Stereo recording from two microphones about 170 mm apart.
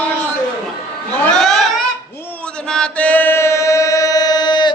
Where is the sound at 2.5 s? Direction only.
5° left (ahead or behind).